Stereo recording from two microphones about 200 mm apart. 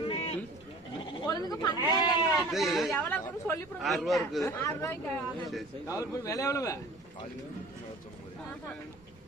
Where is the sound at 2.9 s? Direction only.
10° left (ahead or behind).